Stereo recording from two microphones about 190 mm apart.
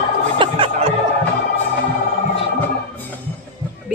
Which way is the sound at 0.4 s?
25° right (ahead or behind).